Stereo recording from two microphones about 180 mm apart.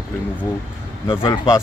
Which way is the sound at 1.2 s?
20° left (ahead or behind).